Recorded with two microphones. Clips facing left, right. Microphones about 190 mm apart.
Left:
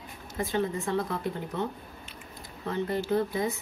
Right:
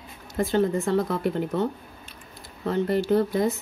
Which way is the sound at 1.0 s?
90° right.